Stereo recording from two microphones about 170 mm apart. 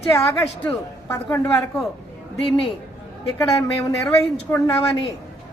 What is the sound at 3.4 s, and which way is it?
Speech, 20° left (ahead or behind).